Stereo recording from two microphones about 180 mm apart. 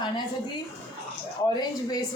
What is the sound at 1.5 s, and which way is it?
Speech, 20° left (ahead or behind).